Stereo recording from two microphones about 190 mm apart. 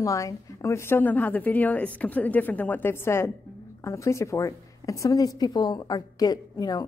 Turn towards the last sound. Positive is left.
turn(degrees=20)  # may be behind; listen again after turning